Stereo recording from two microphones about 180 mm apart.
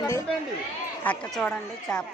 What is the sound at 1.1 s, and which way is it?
Speech, 5° left (ahead or behind).